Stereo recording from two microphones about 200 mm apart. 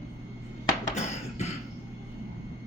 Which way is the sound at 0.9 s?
35° left (ahead or behind).